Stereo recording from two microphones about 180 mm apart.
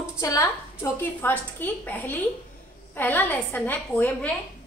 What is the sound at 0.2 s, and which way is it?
A woman's voice, 15° left (ahead or behind).